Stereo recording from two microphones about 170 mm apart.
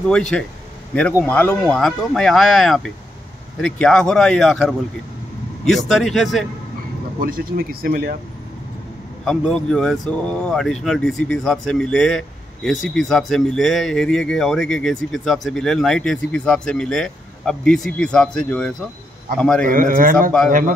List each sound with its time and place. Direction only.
0.1 s speech: 5° left (ahead or behind)
1.6 s speech: centre (ahead or behind)
7.2 s speech: 55° right (ahead or behind)
9.2 s speech: 5° left (ahead or behind)
19.6 s a man's voice: 55° right (ahead or behind)